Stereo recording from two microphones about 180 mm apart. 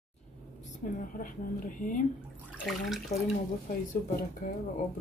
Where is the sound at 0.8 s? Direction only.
45° left (ahead or behind).